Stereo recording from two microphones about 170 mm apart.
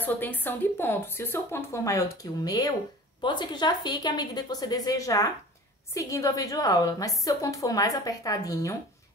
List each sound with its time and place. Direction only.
0.0 s speech: 10° left (ahead or behind)